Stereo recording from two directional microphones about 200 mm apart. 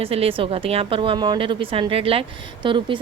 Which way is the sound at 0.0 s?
30° right (ahead or behind).